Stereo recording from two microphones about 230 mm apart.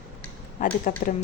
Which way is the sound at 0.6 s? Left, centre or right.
Left.